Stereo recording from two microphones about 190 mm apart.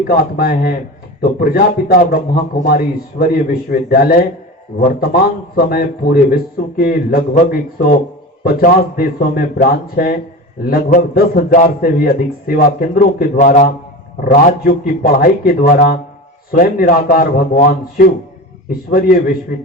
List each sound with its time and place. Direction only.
0.1 s a man's voice: 55° left (ahead or behind)
8.4 s a man's voice: 50° left (ahead or behind)